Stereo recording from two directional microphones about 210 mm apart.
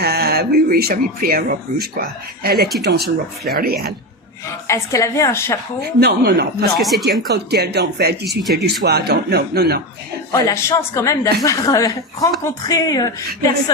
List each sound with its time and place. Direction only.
0.0 s speech: 50° right (ahead or behind)
4.7 s speech: 15° left (ahead or behind)
5.8 s speech: 50° right (ahead or behind)
10.3 s speech: 15° left (ahead or behind)